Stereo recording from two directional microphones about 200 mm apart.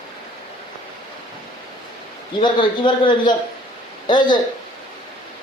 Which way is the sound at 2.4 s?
25° left (ahead or behind).